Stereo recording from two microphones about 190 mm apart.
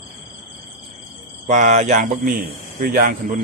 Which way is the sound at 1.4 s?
40° right (ahead or behind).